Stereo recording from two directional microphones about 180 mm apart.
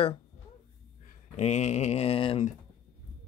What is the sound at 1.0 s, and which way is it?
Speech, 40° left (ahead or behind).